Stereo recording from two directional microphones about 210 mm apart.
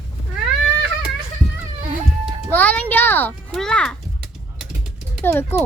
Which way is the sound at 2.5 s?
5° left (ahead or behind).